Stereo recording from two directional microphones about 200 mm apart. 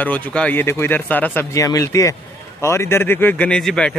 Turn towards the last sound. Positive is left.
turn(degrees=5)  # may be behind; listen again after turning